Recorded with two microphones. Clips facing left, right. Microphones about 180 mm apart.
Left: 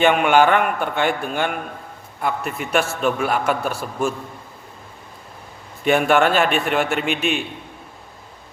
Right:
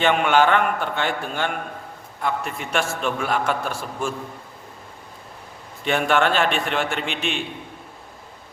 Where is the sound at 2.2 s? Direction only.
5° left (ahead or behind).